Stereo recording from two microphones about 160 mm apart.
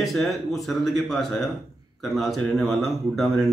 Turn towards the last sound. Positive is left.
turn(degrees=0)  # may be behind; listen again after turning